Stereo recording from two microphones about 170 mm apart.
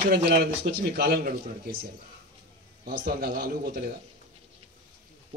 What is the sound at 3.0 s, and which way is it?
Speech, 60° right (ahead or behind).